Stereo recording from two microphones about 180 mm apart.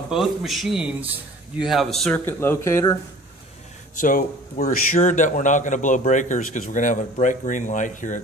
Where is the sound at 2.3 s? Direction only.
10° left (ahead or behind).